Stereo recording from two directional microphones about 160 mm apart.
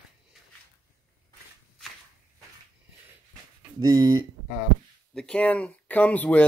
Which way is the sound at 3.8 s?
25° right (ahead or behind).